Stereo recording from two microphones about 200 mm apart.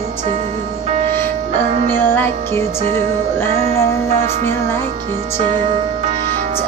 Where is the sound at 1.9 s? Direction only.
10° left (ahead or behind).